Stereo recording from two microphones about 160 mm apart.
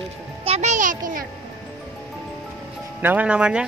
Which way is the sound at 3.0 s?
10° right (ahead or behind).